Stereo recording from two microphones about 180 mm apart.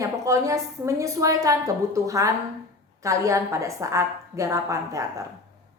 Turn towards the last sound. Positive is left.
turn(degrees=-15)  # may be behind; listen again after turning